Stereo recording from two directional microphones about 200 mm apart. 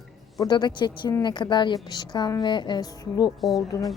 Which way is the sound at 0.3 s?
20° left (ahead or behind).